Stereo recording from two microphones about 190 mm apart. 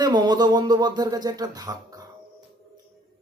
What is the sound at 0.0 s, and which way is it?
Speech, 20° right (ahead or behind).